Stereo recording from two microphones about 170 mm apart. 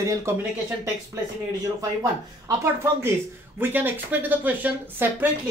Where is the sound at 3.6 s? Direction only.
10° right (ahead or behind).